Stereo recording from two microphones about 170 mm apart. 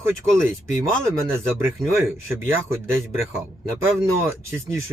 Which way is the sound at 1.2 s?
15° right (ahead or behind).